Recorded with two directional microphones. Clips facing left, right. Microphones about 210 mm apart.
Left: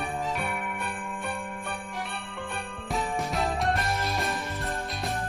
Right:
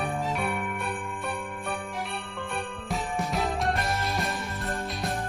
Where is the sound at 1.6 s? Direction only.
Centre (ahead or behind).